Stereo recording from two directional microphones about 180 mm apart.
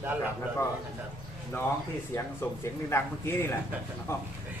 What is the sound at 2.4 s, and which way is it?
Speech, 15° left (ahead or behind).